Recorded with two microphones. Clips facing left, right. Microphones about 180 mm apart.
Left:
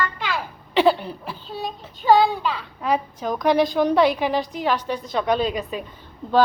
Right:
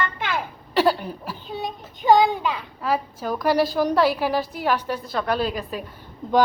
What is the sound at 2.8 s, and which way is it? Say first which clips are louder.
A woman's voice: left 2 dB; 5° right (ahead or behind).